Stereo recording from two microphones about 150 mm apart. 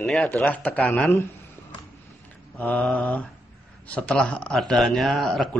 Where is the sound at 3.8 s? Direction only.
10° left (ahead or behind).